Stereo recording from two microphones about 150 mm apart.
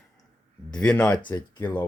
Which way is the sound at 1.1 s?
25° left (ahead or behind).